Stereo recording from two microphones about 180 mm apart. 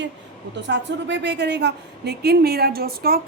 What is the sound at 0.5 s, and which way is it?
A woman's voice, 80° right.